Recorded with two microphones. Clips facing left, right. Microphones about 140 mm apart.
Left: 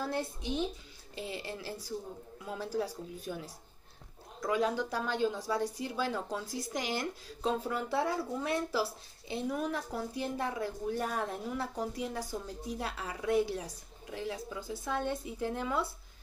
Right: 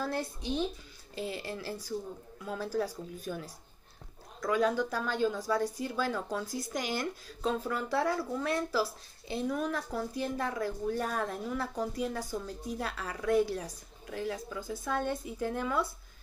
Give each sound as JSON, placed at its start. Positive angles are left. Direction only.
{"t": 0.0, "sound": "a woman's voice", "side_deg": 20}